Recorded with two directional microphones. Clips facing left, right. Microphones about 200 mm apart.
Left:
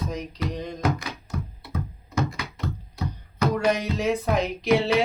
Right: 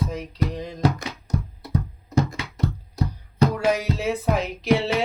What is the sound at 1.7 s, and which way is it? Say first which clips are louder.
Music: right 9 dB; 35° right (ahead or behind).